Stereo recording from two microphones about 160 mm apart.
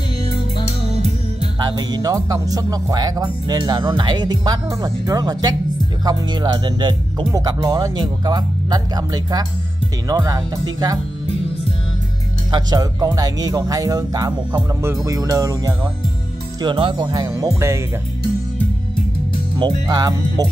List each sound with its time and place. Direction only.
1.6 s speech: 25° right (ahead or behind)
12.4 s speech: 25° right (ahead or behind)
16.6 s speech: 30° right (ahead or behind); by 17.8 s 15° right (ahead or behind)
19.9 s speech: 25° right (ahead or behind)